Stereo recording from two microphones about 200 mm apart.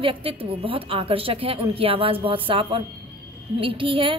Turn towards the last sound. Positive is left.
turn(degrees=-25)  # may be behind; listen again after turning